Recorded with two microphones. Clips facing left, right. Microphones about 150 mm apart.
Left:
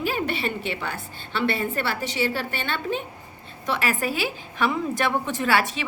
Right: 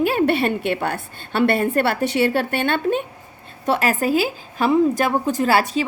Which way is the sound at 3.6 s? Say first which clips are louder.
Right 6 dB; 40° right (ahead or behind).